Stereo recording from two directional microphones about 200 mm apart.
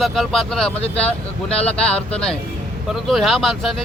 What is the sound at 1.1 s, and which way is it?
Speech, 30° left (ahead or behind).